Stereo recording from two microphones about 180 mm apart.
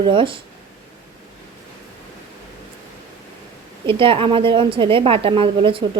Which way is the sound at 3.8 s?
30° right (ahead or behind).